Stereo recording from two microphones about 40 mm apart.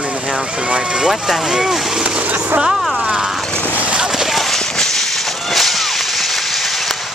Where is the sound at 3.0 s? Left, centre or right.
Centre.